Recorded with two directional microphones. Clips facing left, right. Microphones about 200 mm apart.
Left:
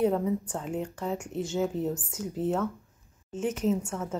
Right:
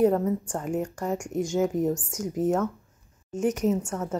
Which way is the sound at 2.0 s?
90° right.